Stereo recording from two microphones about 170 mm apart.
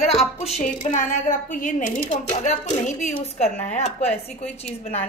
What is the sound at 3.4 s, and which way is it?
Speech, 40° left (ahead or behind).